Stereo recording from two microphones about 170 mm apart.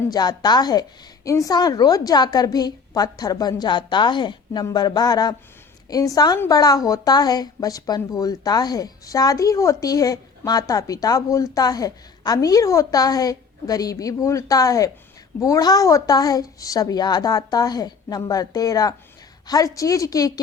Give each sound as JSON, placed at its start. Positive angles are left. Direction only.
{"t": 0.1, "sound": "a woman's voice", "side_deg": 25}